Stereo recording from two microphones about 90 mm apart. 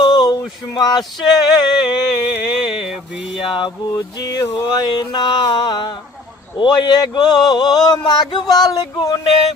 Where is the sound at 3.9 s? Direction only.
40° left (ahead or behind).